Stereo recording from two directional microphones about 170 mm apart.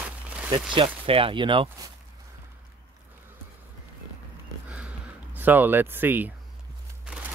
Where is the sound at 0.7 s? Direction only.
30° right (ahead or behind).